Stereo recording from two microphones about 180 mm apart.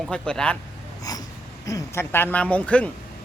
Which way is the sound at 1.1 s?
20° left (ahead or behind).